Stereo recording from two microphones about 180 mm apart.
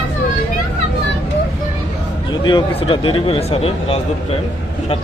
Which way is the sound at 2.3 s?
25° left (ahead or behind).